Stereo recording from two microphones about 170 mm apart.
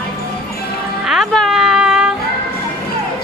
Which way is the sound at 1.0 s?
Centre (ahead or behind).